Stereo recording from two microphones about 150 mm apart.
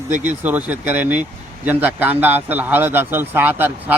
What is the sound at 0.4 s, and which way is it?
Speech, 10° right (ahead or behind).